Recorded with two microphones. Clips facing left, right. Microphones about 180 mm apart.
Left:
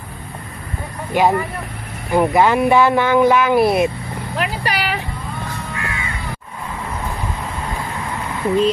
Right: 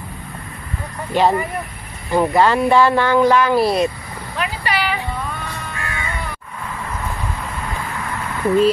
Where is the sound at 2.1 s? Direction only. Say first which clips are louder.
Left 1 dB; 15° left (ahead or behind).